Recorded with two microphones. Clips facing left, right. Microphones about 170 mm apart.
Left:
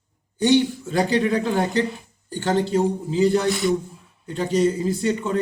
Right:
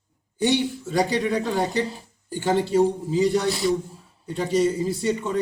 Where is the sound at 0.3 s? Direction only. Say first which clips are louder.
Left 4 dB; 5° right (ahead or behind).